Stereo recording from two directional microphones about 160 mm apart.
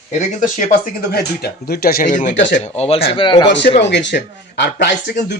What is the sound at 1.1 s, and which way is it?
Speech, 80° left.